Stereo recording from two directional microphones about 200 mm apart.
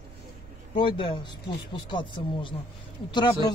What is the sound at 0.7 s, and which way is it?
A man's voice, 25° left (ahead or behind).